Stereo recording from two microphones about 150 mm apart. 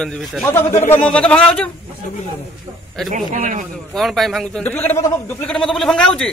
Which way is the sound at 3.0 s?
55° right (ahead or behind).